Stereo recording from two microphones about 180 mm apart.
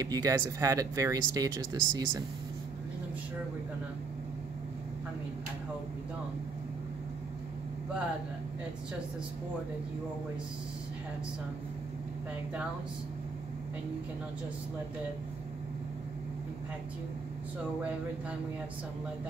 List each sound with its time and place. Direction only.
0.0 s speech: 20° right (ahead or behind)